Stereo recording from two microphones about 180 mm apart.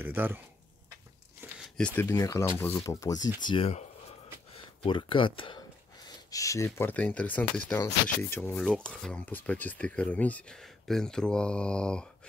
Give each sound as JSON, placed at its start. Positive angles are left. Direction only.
{"t": 0.0, "sound": "speech", "side_deg": -10}
{"t": 1.8, "sound": "speech", "side_deg": 10}
{"t": 3.4, "sound": "speech", "side_deg": 30}
{"t": 4.8, "sound": "speech", "side_deg": 25}